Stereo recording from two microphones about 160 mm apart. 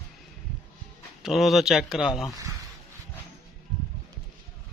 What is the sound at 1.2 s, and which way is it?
Speech, centre (ahead or behind).